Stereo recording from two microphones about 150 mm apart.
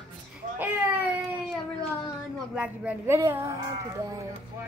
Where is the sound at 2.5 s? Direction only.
10° right (ahead or behind).